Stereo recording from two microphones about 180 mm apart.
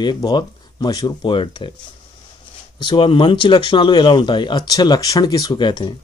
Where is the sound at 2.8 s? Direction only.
25° left (ahead or behind).